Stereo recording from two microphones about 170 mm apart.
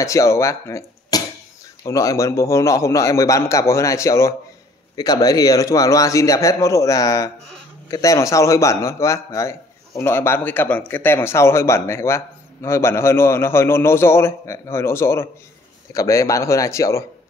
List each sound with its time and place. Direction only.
0.0 s a man's voice: 20° left (ahead or behind)